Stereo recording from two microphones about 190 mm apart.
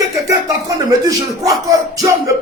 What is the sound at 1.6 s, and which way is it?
Speech, 20° right (ahead or behind).